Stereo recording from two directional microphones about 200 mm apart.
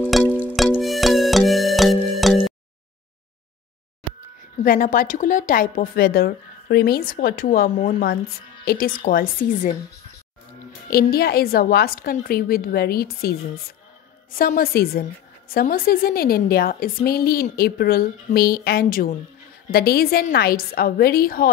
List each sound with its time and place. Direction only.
0.1 s music: 5° left (ahead or behind)
4.6 s a woman's voice: 45° left (ahead or behind)
10.9 s a woman's voice: 50° left (ahead or behind)